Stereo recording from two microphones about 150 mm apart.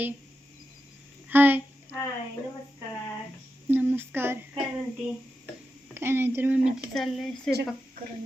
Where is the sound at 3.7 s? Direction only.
10° right (ahead or behind).